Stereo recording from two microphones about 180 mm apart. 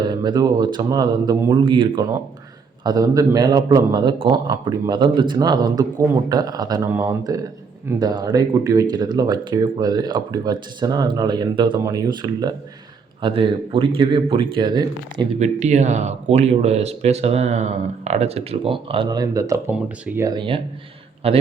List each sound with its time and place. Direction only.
0.0 s speech: 25° right (ahead or behind)
15.4 s speech: 40° right (ahead or behind)